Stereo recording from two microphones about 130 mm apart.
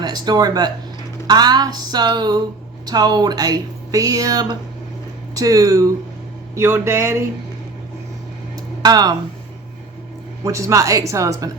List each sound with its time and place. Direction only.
0.0 s speech: 30° right (ahead or behind)
8.8 s speech: 30° right (ahead or behind)
10.4 s speech: 25° right (ahead or behind)